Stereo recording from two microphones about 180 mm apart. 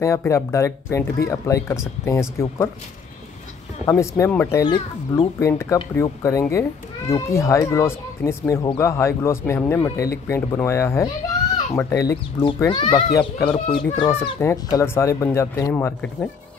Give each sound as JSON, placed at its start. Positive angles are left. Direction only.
{"t": 0.0, "sound": "speech", "side_deg": 15}
{"t": 3.8, "sound": "speech", "side_deg": 15}
{"t": 14.4, "sound": "speech", "side_deg": 15}